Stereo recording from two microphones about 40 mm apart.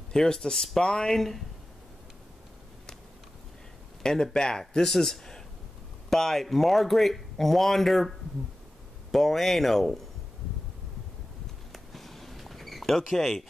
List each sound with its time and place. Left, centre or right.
0.1 s speech: centre
4.0 s speech: centre
9.1 s speech: centre
11.7 s a sound: centre